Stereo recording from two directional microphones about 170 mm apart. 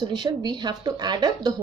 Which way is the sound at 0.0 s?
25° right (ahead or behind).